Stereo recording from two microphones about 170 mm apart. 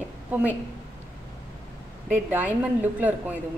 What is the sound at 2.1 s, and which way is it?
Speech, 10° right (ahead or behind).